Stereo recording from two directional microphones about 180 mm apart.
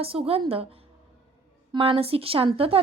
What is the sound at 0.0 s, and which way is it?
Speech, 30° right (ahead or behind).